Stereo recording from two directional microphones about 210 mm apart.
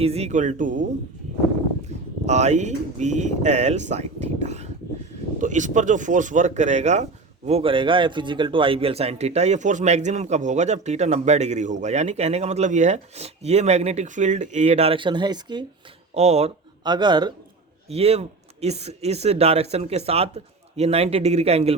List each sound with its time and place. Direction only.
0.0 s speech: 30° right (ahead or behind)
1.9 s a sound: 30° right (ahead or behind)
2.2 s speech: 35° right (ahead or behind)
16.1 s speech: 30° right (ahead or behind)
16.8 s a man's voice: 20° right (ahead or behind)